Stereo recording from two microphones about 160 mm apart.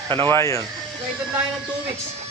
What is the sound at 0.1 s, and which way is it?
Speech, 30° right (ahead or behind).